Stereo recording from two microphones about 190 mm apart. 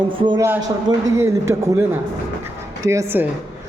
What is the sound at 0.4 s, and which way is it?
A man's voice, 10° right (ahead or behind).